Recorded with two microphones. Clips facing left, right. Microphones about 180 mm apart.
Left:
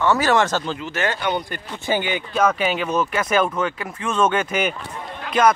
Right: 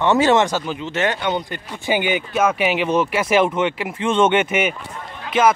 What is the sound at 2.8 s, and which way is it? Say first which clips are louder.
Speech: right 3 dB; 30° right (ahead or behind).